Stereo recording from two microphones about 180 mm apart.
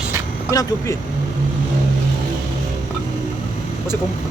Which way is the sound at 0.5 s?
20° left (ahead or behind).